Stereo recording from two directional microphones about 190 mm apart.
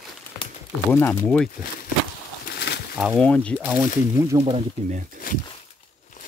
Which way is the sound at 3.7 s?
10° right (ahead or behind).